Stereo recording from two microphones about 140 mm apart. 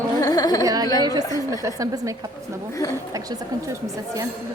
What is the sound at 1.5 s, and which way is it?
A woman's voice, 25° right (ahead or behind).